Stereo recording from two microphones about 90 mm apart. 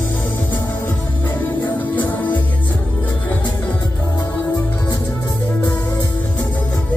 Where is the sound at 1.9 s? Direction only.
20° left (ahead or behind).